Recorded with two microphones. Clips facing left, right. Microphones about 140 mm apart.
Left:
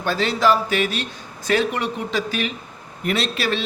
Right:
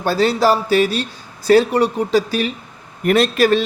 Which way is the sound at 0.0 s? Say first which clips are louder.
Right 4 dB; 40° right (ahead or behind).